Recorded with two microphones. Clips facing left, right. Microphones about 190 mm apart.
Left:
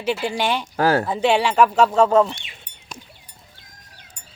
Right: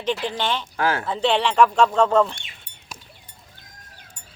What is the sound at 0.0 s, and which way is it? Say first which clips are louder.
Speech: left 2 dB; 10° left (ahead or behind).